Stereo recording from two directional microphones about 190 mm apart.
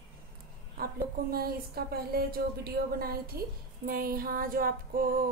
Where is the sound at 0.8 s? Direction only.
50° right (ahead or behind).